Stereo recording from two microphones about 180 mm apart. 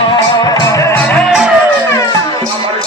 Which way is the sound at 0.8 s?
10° left (ahead or behind).